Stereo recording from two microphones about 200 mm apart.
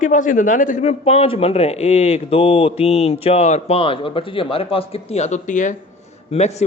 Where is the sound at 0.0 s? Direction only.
40° left (ahead or behind).